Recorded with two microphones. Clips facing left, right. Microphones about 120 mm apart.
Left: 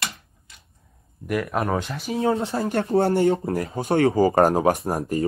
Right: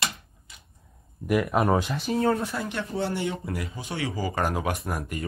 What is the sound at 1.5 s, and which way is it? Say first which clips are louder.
Speech: right 1 dB; 10° right (ahead or behind).